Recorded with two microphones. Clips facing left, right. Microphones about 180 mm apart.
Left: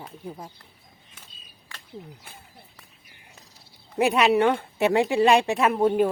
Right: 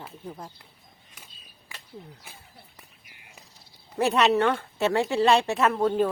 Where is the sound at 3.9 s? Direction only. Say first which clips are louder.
Left 2 dB; 10° left (ahead or behind).